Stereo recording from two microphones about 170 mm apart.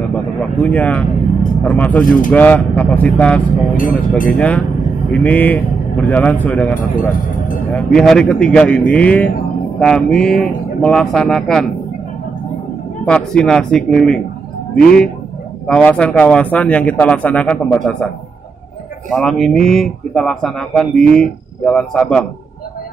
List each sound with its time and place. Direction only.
0.1 s vehicle: 5° left (ahead or behind)
1.6 s speech: 10° left (ahead or behind)
2.0 s speech: 50° left (ahead or behind)
2.3 s speech: 10° left (ahead or behind)
4.4 s speech: 10° left (ahead or behind)
13.0 s speech: 5° left (ahead or behind)
19.1 s speech: centre (ahead or behind)